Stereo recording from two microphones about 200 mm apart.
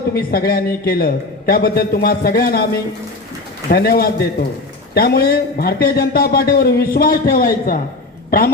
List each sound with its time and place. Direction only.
0.1 s a man's voice: 50° left (ahead or behind)
3.7 s a man's voice: 50° left (ahead or behind)